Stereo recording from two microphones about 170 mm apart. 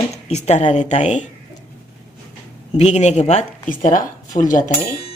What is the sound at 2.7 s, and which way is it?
Speech, 40° left (ahead or behind).